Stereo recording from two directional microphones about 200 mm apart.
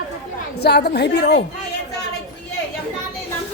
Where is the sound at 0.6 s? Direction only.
55° left (ahead or behind).